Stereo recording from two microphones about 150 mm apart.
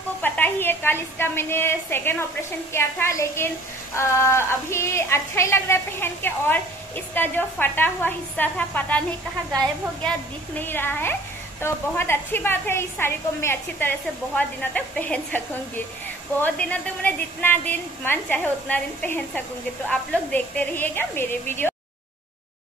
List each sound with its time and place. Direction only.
0.2 s a woman's voice: 15° left (ahead or behind)
10.0 s a woman's voice: 10° left (ahead or behind)